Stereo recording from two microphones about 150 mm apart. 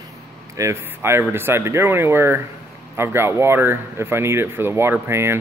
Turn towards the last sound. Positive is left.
turn(degrees=-15)  # may be behind; listen again after turning